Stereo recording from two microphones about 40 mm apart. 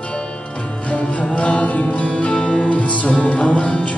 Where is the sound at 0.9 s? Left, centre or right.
Left.